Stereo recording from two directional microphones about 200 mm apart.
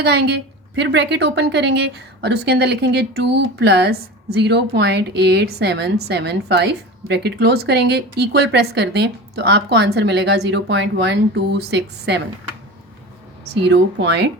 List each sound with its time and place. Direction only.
0.0 s a woman's voice: 55° right (ahead or behind)
13.4 s a woman's voice: 60° right (ahead or behind)